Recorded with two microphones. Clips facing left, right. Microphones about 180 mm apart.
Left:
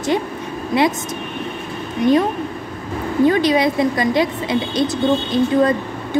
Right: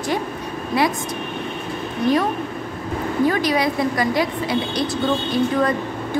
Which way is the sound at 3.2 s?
25° left (ahead or behind).